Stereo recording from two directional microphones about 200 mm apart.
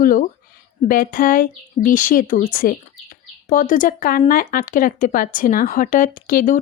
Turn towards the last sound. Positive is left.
turn(degrees=45)  # may be behind; listen again after turning